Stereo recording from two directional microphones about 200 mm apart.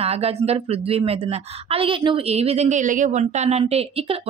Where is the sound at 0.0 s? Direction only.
30° right (ahead or behind).